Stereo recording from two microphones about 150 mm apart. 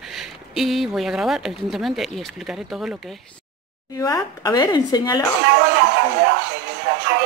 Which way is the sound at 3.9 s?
25° left (ahead or behind).